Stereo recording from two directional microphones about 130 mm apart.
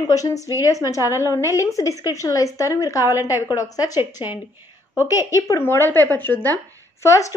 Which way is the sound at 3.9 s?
15° right (ahead or behind).